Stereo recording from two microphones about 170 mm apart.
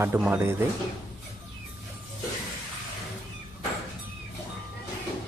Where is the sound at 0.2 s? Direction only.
10° right (ahead or behind).